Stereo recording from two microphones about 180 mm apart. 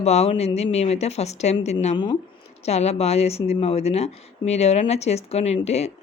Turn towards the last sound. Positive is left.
turn(degrees=35)  # may be behind; listen again after turning